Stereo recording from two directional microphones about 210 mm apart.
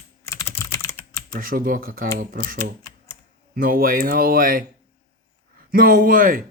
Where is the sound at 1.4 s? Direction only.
40° right (ahead or behind).